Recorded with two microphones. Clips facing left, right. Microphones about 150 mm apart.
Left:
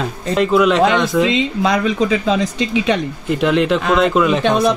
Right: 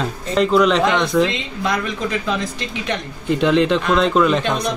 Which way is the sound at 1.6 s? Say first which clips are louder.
Left 3 dB; 90° left.